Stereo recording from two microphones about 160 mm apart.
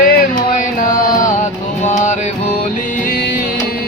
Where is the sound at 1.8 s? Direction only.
50° left (ahead or behind).